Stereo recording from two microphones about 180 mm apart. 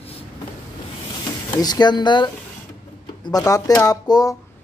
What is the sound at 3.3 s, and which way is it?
Speech, 20° left (ahead or behind).